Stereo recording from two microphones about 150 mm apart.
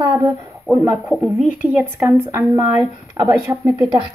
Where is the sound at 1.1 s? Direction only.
Centre (ahead or behind).